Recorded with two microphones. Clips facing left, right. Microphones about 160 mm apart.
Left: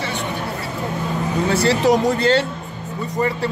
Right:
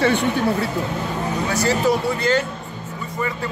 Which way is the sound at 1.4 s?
30° left (ahead or behind).